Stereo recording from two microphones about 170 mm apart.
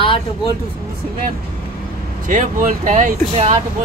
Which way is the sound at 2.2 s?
50° right (ahead or behind).